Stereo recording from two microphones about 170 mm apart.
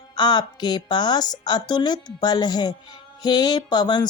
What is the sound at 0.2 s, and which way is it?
Speech, 25° left (ahead or behind).